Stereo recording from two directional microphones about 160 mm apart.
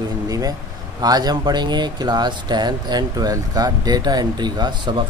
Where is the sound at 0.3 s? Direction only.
20° right (ahead or behind).